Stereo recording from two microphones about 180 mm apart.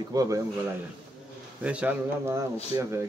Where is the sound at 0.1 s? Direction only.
20° right (ahead or behind).